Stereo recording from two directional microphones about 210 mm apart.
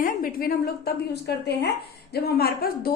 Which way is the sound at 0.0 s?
45° left (ahead or behind).